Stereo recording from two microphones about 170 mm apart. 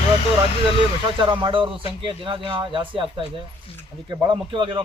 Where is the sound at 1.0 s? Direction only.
30° right (ahead or behind).